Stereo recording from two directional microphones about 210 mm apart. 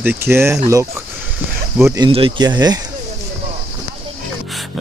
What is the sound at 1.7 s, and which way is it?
Speech, 15° right (ahead or behind).